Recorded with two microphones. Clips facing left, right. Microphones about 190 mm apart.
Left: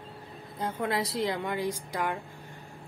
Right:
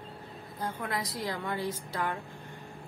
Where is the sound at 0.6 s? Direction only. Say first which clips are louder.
Left 5 dB; 30° left (ahead or behind).